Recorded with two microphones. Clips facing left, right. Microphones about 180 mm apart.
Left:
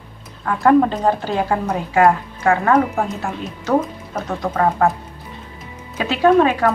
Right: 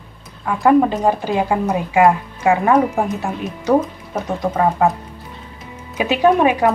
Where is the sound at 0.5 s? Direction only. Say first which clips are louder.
Even; 5° right (ahead or behind).